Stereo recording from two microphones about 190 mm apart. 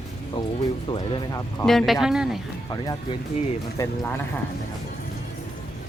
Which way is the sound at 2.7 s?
20° left (ahead or behind).